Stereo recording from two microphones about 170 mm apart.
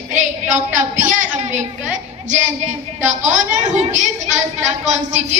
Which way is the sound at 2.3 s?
45° right (ahead or behind).